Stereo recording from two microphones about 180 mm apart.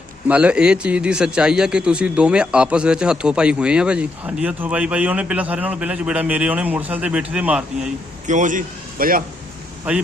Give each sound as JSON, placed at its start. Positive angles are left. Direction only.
{"t": 0.3, "sound": "a man's voice", "side_deg": -5}
{"t": 8.3, "sound": "a man's voice", "side_deg": -45}
{"t": 9.9, "sound": "a man's voice", "side_deg": -5}